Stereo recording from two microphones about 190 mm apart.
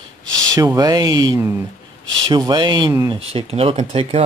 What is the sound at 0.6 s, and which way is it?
Speech, 20° right (ahead or behind).